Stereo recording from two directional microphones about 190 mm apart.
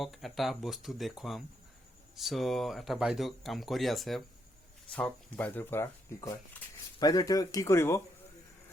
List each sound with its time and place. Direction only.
0.0 s speech: centre (ahead or behind)